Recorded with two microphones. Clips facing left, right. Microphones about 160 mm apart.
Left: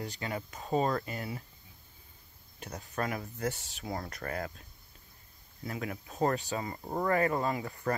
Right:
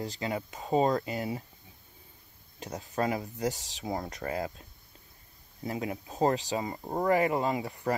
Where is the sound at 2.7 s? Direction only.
20° right (ahead or behind).